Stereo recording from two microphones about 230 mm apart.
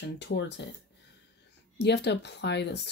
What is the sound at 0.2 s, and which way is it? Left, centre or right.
Speech, left.